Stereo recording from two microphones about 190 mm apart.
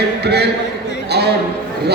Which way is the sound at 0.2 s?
60° right (ahead or behind).